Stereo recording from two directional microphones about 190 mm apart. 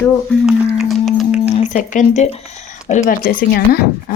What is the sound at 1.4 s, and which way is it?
Speech, 40° left (ahead or behind).